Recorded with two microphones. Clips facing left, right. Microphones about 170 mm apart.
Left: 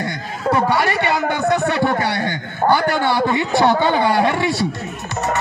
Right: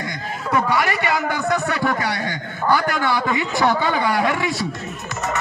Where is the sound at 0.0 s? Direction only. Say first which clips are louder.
Left 5 dB; 30° left (ahead or behind).